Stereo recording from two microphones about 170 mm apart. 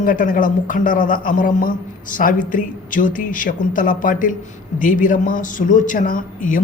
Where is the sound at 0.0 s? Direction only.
50° left (ahead or behind).